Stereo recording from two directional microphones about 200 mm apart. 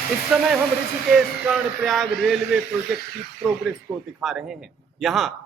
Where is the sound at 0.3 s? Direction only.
Centre (ahead or behind).